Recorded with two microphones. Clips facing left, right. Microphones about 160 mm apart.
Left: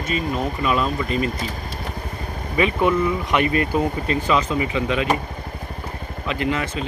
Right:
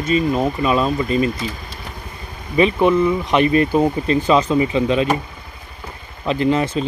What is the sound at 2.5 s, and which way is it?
Speech, 25° right (ahead or behind).